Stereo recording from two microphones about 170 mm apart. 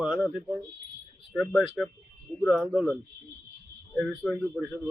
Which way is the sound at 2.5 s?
Centre (ahead or behind).